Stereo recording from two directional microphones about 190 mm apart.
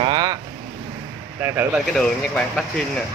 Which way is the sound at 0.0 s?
25° right (ahead or behind).